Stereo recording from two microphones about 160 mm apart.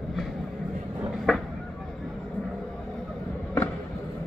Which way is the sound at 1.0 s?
Centre (ahead or behind).